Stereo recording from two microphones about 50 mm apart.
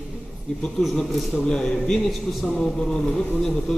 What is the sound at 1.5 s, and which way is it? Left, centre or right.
Speech, centre.